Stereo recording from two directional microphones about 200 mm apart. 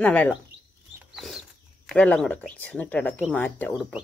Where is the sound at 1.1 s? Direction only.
Centre (ahead or behind).